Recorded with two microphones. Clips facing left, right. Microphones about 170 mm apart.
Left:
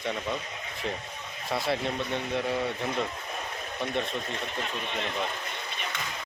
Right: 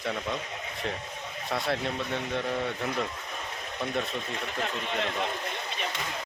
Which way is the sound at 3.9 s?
Centre (ahead or behind).